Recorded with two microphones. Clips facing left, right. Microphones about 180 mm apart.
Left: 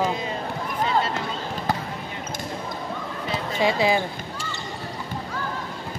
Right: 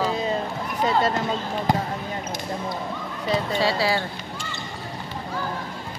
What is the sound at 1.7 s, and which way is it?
Speech, 15° right (ahead or behind).